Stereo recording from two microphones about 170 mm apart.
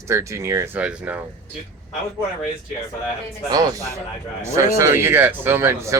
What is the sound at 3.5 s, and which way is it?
Speech, 25° right (ahead or behind).